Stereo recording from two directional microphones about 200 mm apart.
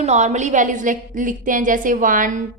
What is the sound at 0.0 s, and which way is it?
A woman's voice, 35° right (ahead or behind).